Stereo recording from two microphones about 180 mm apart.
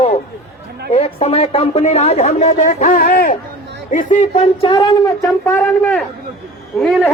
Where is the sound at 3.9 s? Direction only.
45° left (ahead or behind).